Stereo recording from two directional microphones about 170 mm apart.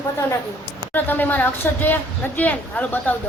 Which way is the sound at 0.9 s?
10° left (ahead or behind).